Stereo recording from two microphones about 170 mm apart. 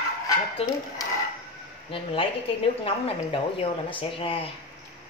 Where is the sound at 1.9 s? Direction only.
30° left (ahead or behind).